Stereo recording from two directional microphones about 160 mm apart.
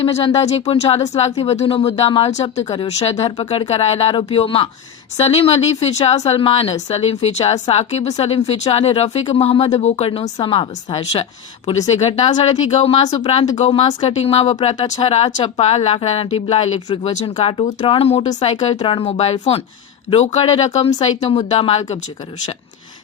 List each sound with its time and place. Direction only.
0.0 s speech: 40° left (ahead or behind)
2.3 s speech: 45° left (ahead or behind)
18.8 s speech: 35° left (ahead or behind)